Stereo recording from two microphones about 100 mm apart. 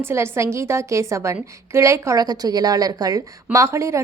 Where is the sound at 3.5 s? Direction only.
30° right (ahead or behind).